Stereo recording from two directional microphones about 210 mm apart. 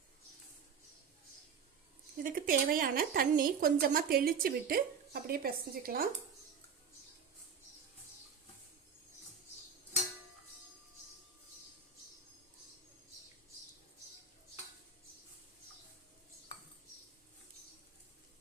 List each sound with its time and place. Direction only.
2.2 s speech: 40° right (ahead or behind)